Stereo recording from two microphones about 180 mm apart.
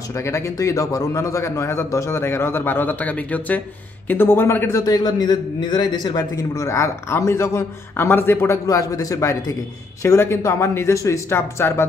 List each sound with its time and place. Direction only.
0.2 s a man's voice: 15° left (ahead or behind)